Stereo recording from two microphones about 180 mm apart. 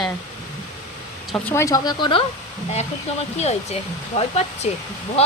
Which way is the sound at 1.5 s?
15° left (ahead or behind).